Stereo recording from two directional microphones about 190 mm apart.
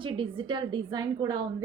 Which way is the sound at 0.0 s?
25° right (ahead or behind).